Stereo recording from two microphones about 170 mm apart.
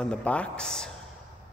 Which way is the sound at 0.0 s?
5° left (ahead or behind).